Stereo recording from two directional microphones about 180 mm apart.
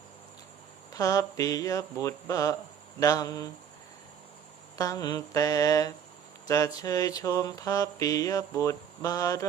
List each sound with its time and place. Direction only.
0.9 s mantra: 20° left (ahead or behind)
4.8 s mantra: 20° left (ahead or behind)